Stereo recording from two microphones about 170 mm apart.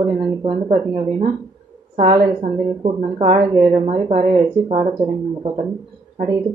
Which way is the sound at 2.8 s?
35° right (ahead or behind).